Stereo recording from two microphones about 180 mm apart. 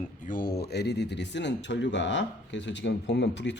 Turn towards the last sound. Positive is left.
turn(degrees=75)  # may be behind; listen again after turning